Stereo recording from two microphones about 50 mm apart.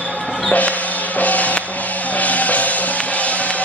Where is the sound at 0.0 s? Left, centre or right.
Left.